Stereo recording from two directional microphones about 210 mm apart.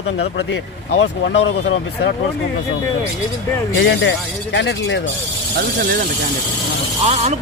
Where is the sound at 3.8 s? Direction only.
60° left (ahead or behind).